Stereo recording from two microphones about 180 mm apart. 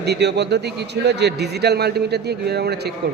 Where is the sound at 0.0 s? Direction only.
70° right (ahead or behind).